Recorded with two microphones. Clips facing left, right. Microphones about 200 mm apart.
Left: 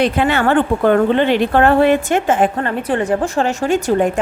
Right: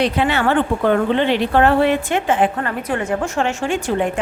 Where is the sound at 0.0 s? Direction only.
50° left (ahead or behind).